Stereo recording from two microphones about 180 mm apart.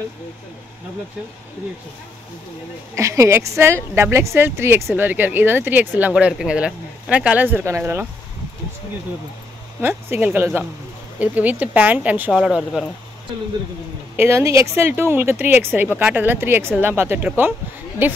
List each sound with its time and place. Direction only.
3.0 s speech: 15° right (ahead or behind)
9.8 s speech: 10° right (ahead or behind)
14.1 s speech: 15° right (ahead or behind)